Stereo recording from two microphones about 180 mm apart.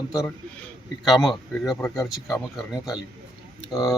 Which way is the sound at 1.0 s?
Centre (ahead or behind).